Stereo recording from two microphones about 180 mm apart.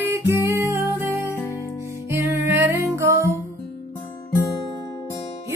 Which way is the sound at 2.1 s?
15° right (ahead or behind).